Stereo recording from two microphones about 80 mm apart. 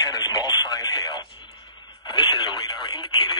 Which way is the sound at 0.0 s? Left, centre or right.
Left.